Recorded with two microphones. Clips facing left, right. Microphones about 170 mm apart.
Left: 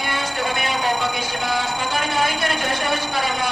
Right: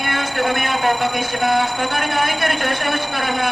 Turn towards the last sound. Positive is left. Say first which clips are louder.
# right 2 dB
turn(degrees=-55)  # may be behind; listen again after turning